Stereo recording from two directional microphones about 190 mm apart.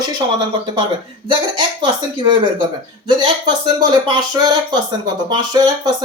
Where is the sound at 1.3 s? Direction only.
25° right (ahead or behind).